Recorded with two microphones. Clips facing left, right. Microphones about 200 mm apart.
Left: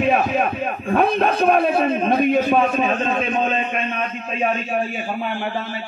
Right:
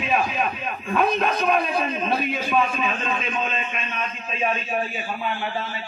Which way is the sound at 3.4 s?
55° left (ahead or behind).